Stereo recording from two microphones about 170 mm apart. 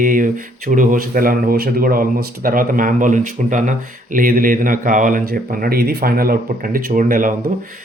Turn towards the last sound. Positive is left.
turn(degrees=-50)  # may be behind; listen again after turning